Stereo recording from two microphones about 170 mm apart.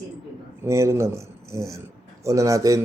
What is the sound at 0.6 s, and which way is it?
Speech, 15° right (ahead or behind).